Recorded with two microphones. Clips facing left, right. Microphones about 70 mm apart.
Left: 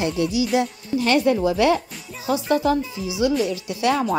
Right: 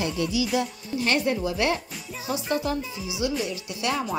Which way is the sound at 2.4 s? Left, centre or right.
Centre.